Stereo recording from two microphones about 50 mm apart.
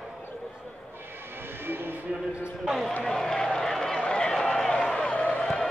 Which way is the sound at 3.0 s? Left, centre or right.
Centre.